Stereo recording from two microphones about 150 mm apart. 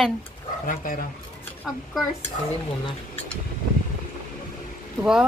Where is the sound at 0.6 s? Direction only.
65° left (ahead or behind).